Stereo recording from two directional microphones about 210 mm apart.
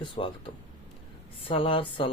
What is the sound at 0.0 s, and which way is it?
Speech, 25° left (ahead or behind).